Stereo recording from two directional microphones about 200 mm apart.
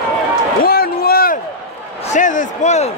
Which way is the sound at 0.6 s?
50° left (ahead or behind).